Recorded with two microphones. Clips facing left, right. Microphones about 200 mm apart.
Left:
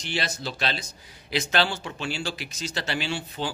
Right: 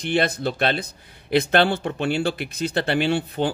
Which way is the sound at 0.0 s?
55° right (ahead or behind).